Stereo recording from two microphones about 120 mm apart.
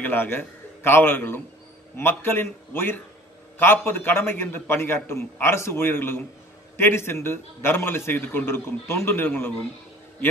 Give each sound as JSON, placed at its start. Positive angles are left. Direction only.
{"t": 0.0, "sound": "a man's voice", "side_deg": 15}